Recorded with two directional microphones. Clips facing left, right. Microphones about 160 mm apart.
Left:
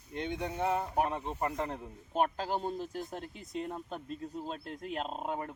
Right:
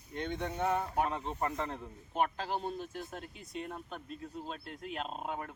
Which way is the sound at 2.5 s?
40° left (ahead or behind).